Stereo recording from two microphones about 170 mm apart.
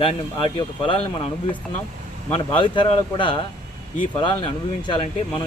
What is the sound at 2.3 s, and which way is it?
Speech, 30° left (ahead or behind).